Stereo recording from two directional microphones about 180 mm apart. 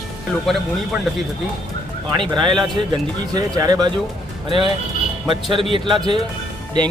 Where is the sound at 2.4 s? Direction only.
25° right (ahead or behind).